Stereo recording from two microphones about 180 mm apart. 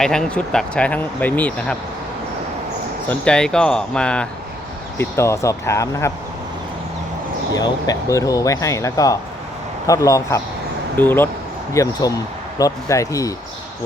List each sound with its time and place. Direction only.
0.0 s speech: 5° left (ahead or behind)
3.1 s speech: 5° left (ahead or behind)
7.5 s speech: 20° left (ahead or behind)